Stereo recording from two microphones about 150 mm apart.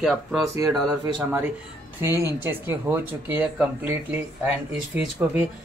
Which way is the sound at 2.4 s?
15° right (ahead or behind).